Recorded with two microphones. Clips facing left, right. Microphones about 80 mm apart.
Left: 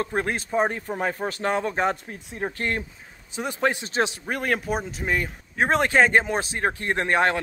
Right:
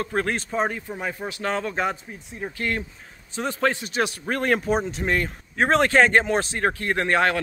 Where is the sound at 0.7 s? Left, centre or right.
Left.